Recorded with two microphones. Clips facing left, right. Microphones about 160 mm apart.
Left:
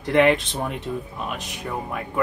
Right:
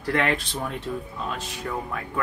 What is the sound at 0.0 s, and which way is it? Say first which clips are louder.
Speech: left 7 dB; 20° left (ahead or behind).